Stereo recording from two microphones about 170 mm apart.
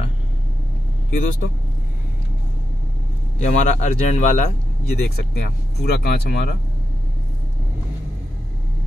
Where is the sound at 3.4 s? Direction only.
45° left (ahead or behind).